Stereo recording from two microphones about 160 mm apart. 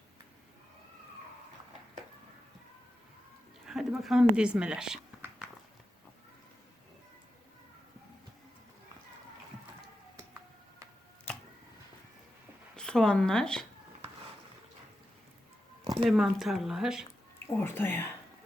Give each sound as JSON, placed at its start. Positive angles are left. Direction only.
{"t": 3.7, "sound": "a woman's voice", "side_deg": -5}
{"t": 12.7, "sound": "speech", "side_deg": 5}
{"t": 15.8, "sound": "a sound", "side_deg": -30}
{"t": 16.0, "sound": "a woman's voice", "side_deg": 0}
{"t": 17.4, "sound": "speech", "side_deg": 15}